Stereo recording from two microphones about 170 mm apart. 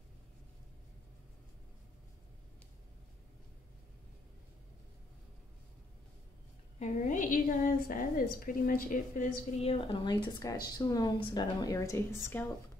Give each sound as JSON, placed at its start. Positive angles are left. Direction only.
{"t": 6.8, "sound": "a woman's voice", "side_deg": 50}
{"t": 9.6, "sound": "a woman's voice", "side_deg": 35}